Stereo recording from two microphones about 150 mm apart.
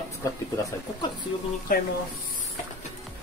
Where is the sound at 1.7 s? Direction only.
65° left (ahead or behind).